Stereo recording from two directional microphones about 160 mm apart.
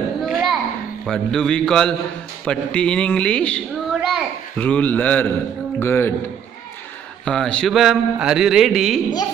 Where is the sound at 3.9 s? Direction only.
5° right (ahead or behind).